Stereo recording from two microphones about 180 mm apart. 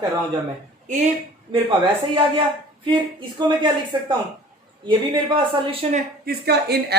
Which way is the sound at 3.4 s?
25° right (ahead or behind).